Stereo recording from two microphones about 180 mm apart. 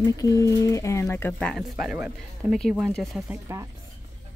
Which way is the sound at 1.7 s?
5° right (ahead or behind).